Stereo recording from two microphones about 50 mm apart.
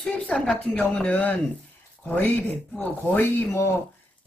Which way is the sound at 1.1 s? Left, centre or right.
Left.